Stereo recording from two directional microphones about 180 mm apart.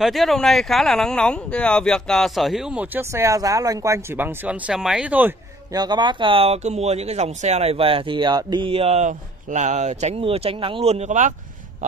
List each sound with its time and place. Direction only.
0.0 s speech: centre (ahead or behind)
5.7 s speech: 25° right (ahead or behind); by 11.3 s 40° right (ahead or behind)